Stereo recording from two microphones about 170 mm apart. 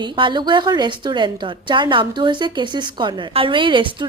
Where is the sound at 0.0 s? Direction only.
25° right (ahead or behind).